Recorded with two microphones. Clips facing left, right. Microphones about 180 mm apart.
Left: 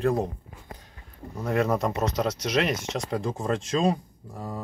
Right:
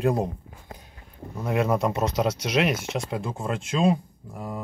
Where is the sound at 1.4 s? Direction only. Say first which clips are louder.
Right 1 dB; 5° right (ahead or behind).